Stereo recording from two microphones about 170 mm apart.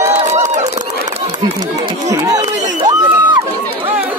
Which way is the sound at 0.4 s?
45° right (ahead or behind).